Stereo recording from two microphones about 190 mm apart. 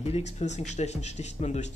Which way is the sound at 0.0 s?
35° left (ahead or behind).